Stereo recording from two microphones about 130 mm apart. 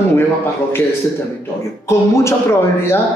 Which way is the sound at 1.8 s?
20° left (ahead or behind).